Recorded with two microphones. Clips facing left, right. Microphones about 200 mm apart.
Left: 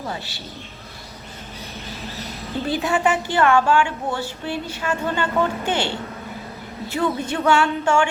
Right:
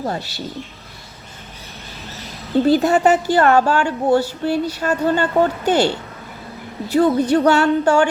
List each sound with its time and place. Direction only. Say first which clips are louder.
0.0 s a woman's voice: right 6 dB; 40° right (ahead or behind)
2.6 s a woman's voice: right 6 dB; 40° right (ahead or behind)
6.9 s a woman's voice: right 9 dB; 40° right (ahead or behind)